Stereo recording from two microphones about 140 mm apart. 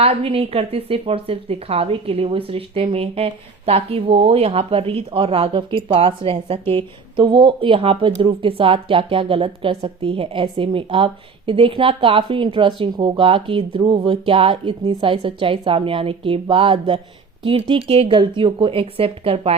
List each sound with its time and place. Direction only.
0.0 s a woman's voice: 45° right (ahead or behind)